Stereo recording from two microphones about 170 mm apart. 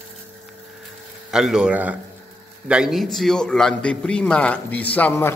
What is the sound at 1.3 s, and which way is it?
A man's voice, 5° right (ahead or behind).